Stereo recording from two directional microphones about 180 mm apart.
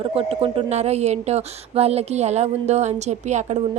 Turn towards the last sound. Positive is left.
turn(degrees=-40)  # may be behind; listen again after turning